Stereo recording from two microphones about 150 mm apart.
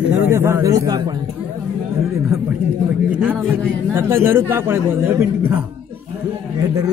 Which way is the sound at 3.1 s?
10° right (ahead or behind).